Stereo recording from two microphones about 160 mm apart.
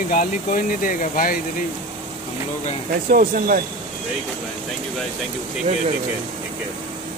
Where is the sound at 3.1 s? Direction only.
65° right (ahead or behind).